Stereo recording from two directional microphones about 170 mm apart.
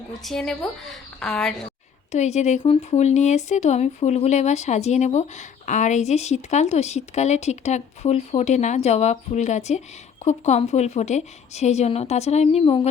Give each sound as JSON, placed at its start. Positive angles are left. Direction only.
{"t": 0.2, "sound": "a woman's voice", "side_deg": 0}
{"t": 2.1, "sound": "speech", "side_deg": 40}